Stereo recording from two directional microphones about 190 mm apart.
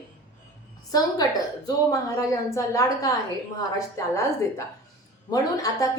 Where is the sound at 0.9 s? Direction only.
20° left (ahead or behind).